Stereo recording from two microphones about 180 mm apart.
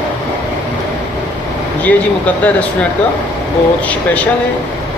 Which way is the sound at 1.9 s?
10° left (ahead or behind).